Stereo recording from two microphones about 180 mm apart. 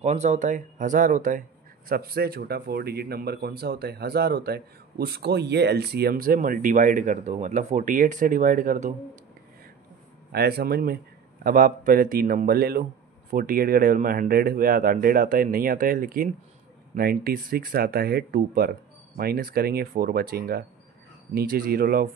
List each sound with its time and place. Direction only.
0.0 s speech: 40° right (ahead or behind)
1.9 s speech: 55° right (ahead or behind)
10.3 s speech: 60° right (ahead or behind)